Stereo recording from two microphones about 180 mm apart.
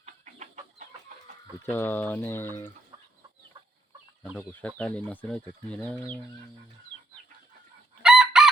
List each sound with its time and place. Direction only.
0.0 s chicken: 40° right (ahead or behind)
1.7 s speech: 10° left (ahead or behind)
4.2 s speech: 5° left (ahead or behind)
8.0 s chicken: 5° right (ahead or behind)